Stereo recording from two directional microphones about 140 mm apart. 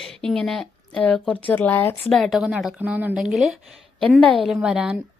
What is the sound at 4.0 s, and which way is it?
Speech, 10° left (ahead or behind).